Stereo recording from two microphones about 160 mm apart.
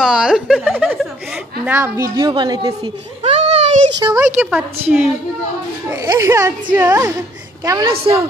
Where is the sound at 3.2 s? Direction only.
40° right (ahead or behind).